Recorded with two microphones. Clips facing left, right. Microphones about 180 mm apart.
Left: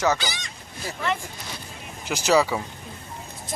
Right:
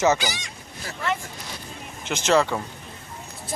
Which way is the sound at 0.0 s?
15° right (ahead or behind).